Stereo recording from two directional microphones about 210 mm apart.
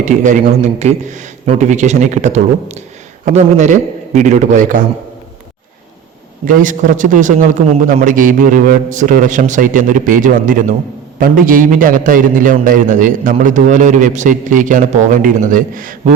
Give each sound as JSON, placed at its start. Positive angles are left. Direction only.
{"t": 0.0, "sound": "a man's voice", "side_deg": -35}
{"t": 6.4, "sound": "a man's voice", "side_deg": -40}